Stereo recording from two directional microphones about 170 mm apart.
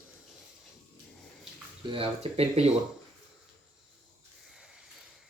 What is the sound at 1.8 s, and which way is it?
Speech, 35° right (ahead or behind).